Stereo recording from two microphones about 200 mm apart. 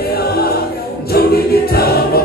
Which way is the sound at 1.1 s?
50° left (ahead or behind).